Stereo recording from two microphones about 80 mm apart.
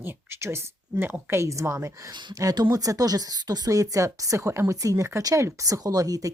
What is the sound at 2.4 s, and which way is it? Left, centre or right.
A woman's voice, right.